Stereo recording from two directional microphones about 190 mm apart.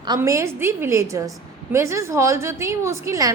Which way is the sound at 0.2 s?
15° right (ahead or behind).